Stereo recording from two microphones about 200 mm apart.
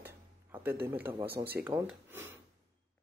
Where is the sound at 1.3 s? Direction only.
50° right (ahead or behind).